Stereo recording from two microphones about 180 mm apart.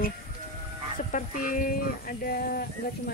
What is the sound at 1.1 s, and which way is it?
Speech, 45° left (ahead or behind).